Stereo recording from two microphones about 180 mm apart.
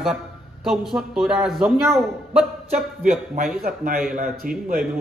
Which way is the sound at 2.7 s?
45° right (ahead or behind).